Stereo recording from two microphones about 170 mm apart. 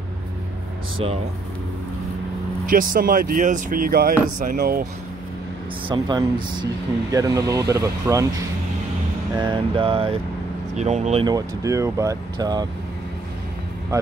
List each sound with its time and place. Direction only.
2.7 s speech: 55° right (ahead or behind)
5.9 s speech: 25° right (ahead or behind)
9.4 s vehicle: 30° right (ahead or behind)
10.7 s vehicle: 40° right (ahead or behind)
11.2 s speech: 20° right (ahead or behind)